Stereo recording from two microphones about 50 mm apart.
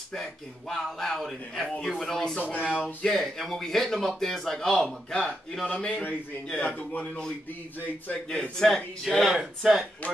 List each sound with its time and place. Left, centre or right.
0.1 s speech: centre
2.4 s speech: right
2.7 s a man's voice: left
3.1 s speech: centre
5.7 s a man's voice: left
8.3 s speech: centre
9.3 s speech: centre